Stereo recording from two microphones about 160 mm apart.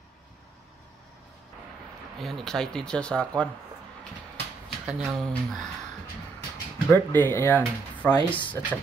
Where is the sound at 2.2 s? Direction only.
Centre (ahead or behind).